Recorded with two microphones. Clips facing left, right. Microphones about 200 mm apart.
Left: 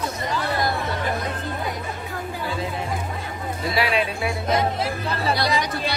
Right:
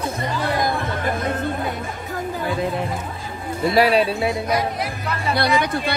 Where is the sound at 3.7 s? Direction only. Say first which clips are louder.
Right 7 dB; 40° right (ahead or behind).